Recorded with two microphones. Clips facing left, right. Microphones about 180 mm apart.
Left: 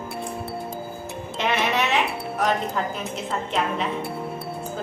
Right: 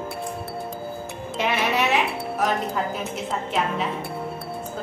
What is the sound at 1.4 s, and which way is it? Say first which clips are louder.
Speech: even; 10° right (ahead or behind).